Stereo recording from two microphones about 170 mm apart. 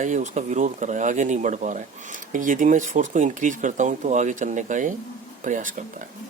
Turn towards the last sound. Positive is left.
turn(degrees=-50)  # may be behind; listen again after turning